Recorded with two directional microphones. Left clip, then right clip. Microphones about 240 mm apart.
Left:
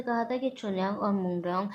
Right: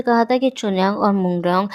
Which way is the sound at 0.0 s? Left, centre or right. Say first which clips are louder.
Right 13 dB; right.